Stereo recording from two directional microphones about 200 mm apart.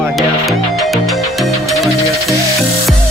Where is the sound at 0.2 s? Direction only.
Centre (ahead or behind).